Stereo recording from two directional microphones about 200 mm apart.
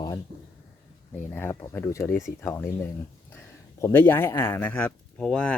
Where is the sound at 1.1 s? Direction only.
10° left (ahead or behind).